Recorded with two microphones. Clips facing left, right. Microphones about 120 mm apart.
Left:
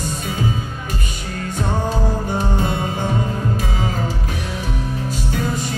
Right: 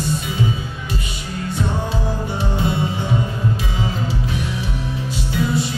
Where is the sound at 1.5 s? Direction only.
45° left (ahead or behind).